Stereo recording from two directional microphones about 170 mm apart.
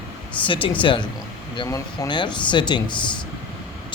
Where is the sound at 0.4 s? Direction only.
30° left (ahead or behind).